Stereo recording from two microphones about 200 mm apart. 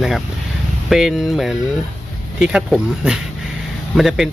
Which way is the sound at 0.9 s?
Centre (ahead or behind).